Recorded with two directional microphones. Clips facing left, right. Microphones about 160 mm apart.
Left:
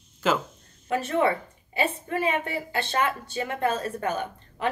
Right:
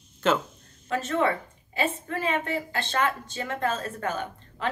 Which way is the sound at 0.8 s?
15° left (ahead or behind).